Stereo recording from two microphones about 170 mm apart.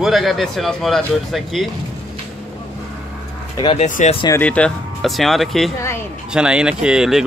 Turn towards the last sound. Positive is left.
turn(degrees=-5)  # may be behind; listen again after turning